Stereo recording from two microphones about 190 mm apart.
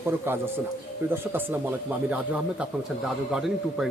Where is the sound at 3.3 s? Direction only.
Centre (ahead or behind).